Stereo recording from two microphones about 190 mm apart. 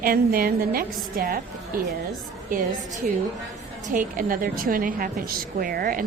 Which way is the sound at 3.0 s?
45° right (ahead or behind).